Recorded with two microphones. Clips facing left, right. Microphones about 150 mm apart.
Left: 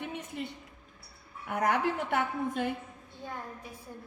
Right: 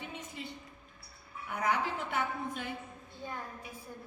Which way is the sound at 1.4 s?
60° left (ahead or behind).